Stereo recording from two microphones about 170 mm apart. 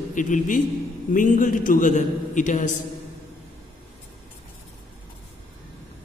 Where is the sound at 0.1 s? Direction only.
50° left (ahead or behind).